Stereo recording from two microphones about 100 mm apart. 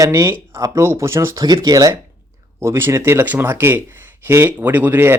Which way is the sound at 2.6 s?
25° right (ahead or behind).